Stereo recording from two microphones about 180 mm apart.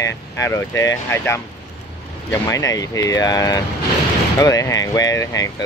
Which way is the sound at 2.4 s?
20° left (ahead or behind).